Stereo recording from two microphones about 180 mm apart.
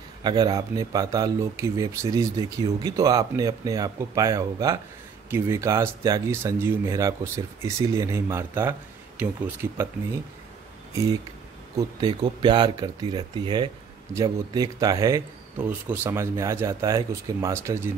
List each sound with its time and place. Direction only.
0.2 s speech: 25° right (ahead or behind)
12.2 s speech: 25° right (ahead or behind)